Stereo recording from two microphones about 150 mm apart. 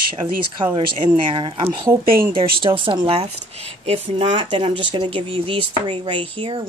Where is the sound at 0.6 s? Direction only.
35° right (ahead or behind).